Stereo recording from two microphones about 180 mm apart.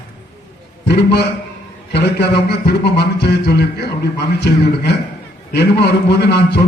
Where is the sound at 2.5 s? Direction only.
65° left (ahead or behind).